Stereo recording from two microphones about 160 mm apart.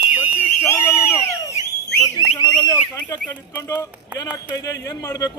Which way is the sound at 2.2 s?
30° left (ahead or behind).